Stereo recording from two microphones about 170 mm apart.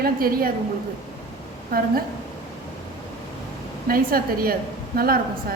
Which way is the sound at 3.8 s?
60° right (ahead or behind).